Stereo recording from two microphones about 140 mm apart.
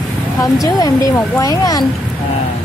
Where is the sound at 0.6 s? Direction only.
25° left (ahead or behind).